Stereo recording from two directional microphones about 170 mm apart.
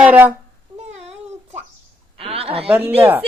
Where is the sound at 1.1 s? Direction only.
10° right (ahead or behind).